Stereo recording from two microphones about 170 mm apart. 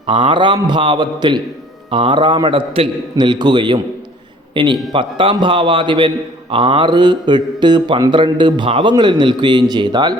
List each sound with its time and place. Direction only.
0.0 s speech: 30° right (ahead or behind)